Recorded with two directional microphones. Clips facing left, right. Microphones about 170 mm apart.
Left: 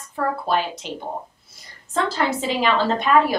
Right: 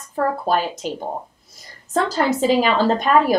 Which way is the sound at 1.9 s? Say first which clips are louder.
Right 3 dB; 40° right (ahead or behind).